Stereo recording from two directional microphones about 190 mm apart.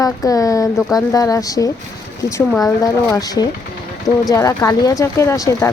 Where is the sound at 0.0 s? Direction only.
15° left (ahead or behind).